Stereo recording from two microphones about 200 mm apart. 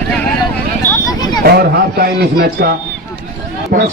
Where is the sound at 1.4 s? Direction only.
50° right (ahead or behind).